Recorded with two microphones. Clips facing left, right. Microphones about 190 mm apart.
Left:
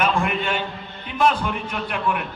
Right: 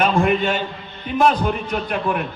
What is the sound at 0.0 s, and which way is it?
A man's voice, 40° right (ahead or behind).